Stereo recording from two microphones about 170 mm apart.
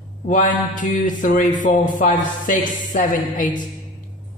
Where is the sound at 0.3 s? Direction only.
50° left (ahead or behind).